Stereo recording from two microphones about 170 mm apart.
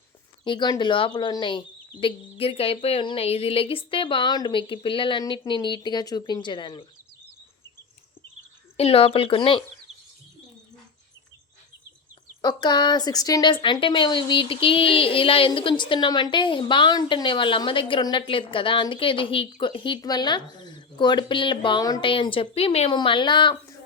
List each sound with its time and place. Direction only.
0.4 s a woman's voice: 25° left (ahead or behind)
8.8 s speech: 35° left (ahead or behind)
12.4 s a woman's voice: 25° left (ahead or behind)